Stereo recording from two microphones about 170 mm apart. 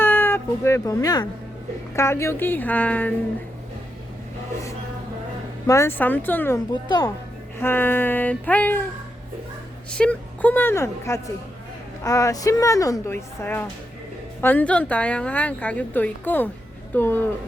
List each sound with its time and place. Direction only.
0.0 s speech: 10° left (ahead or behind)
5.6 s speech: 15° left (ahead or behind)
6.8 s speech: 25° left (ahead or behind)
7.6 s speech: 10° left (ahead or behind)
9.9 s speech: 5° left (ahead or behind)